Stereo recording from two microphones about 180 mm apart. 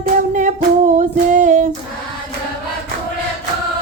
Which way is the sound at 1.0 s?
45° right (ahead or behind).